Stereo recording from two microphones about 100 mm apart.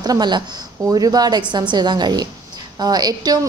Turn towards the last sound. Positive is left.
turn(degrees=-45)  # may be behind; listen again after turning